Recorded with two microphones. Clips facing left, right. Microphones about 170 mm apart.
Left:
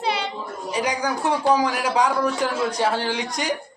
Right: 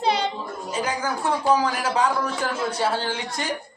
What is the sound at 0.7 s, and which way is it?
A man's voice, 15° left (ahead or behind).